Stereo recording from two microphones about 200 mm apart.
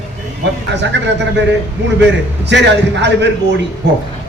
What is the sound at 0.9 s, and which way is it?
Speech, 60° right (ahead or behind).